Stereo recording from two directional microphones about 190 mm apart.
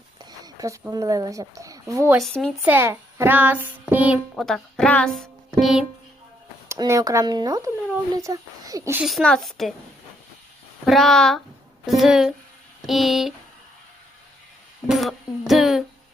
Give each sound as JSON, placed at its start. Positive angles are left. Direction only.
{"t": 0.3, "sound": "a woman's voice", "side_deg": -20}
{"t": 2.2, "sound": "a woman's voice", "side_deg": 0}
{"t": 2.6, "sound": "a child's voice", "side_deg": -10}
{"t": 6.7, "sound": "a child's voice", "side_deg": -15}
{"t": 9.0, "sound": "a woman's voice", "side_deg": 0}
{"t": 10.8, "sound": "a woman's voice", "side_deg": 0}
{"t": 14.8, "sound": "a sound", "side_deg": 0}